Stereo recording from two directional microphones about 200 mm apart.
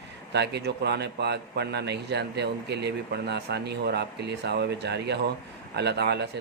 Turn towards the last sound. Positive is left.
turn(degrees=-55)  # may be behind; listen again after turning